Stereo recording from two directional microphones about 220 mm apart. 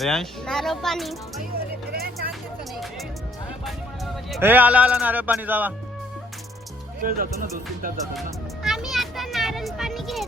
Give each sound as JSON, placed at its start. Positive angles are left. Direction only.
{"t": 0.0, "sound": "a child's voice", "side_deg": 0}
{"t": 1.4, "sound": "music", "side_deg": -45}
{"t": 4.4, "sound": "speech", "side_deg": -10}
{"t": 7.0, "sound": "speech", "side_deg": -40}
{"t": 8.6, "sound": "children playing", "side_deg": 0}